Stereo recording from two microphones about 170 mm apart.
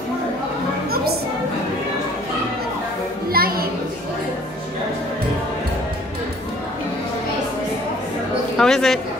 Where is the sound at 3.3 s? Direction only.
60° right (ahead or behind).